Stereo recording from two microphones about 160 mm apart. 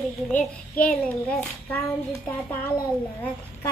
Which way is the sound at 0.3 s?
50° left (ahead or behind).